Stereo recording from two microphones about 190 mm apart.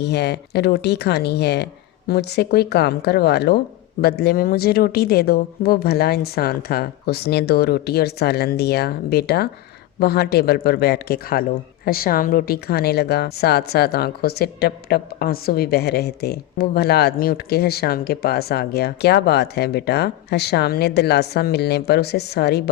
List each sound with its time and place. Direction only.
0.0 s a woman's voice: 60° left (ahead or behind)